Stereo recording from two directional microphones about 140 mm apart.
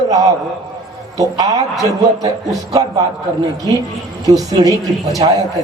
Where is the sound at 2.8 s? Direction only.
30° right (ahead or behind).